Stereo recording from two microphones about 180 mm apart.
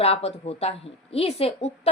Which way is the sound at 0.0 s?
35° left (ahead or behind).